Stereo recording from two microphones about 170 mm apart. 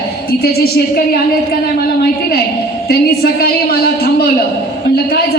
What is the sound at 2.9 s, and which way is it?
Speech, 65° left (ahead or behind).